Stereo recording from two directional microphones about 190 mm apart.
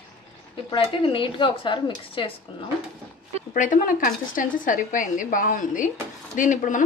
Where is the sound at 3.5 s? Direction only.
45° left (ahead or behind).